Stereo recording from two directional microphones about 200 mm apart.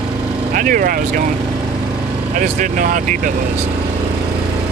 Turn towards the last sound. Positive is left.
turn(degrees=-40)  # may be behind; listen again after turning